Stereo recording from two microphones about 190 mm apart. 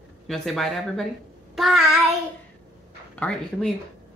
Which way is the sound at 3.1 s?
5° left (ahead or behind).